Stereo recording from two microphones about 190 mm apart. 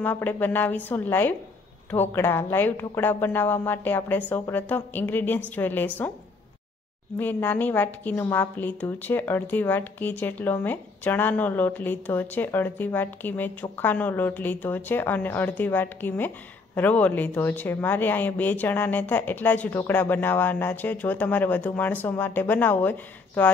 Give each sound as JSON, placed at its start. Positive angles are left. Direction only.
{"t": 0.0, "sound": "a woman's voice", "side_deg": 10}
{"t": 7.2, "sound": "a woman's voice", "side_deg": 10}